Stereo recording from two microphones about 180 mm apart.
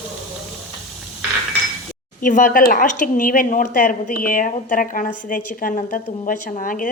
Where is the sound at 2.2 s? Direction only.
45° left (ahead or behind).